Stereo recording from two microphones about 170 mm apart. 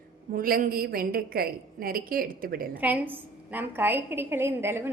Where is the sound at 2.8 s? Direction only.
10° right (ahead or behind).